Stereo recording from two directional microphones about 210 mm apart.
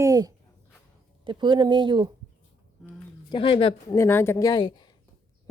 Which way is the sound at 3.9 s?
10° left (ahead or behind).